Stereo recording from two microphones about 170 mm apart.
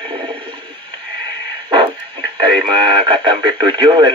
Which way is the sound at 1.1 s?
30° right (ahead or behind).